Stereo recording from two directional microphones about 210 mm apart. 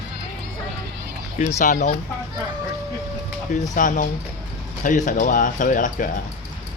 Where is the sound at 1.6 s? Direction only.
35° left (ahead or behind).